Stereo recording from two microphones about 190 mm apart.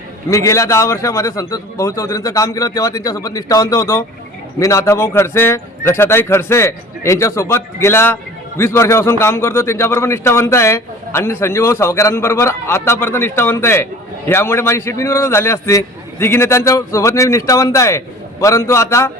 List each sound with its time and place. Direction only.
0.3 s a man's voice: 15° left (ahead or behind)